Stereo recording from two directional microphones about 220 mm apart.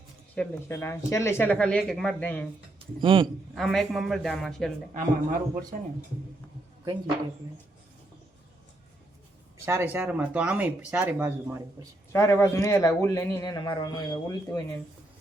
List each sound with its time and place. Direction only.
0.3 s a man's voice: 10° left (ahead or behind)
3.0 s a man's voice: 25° right (ahead or behind)
3.5 s a man's voice: centre (ahead or behind)
4.9 s a man's voice: 40° right (ahead or behind)
9.6 s speech: 10° right (ahead or behind)
12.1 s a man's voice: 15° left (ahead or behind)